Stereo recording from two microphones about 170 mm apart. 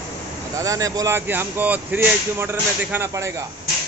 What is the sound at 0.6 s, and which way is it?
Speech, 20° right (ahead or behind).